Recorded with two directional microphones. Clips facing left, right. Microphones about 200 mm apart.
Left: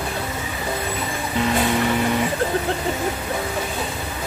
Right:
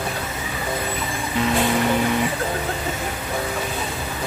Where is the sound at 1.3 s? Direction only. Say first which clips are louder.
Even; centre (ahead or behind).